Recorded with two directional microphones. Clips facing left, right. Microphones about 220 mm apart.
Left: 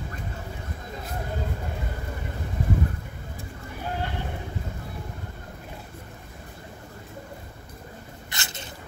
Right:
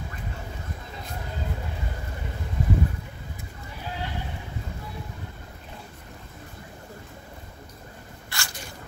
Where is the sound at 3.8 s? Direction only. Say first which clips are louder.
Left 4 dB; 50° left (ahead or behind).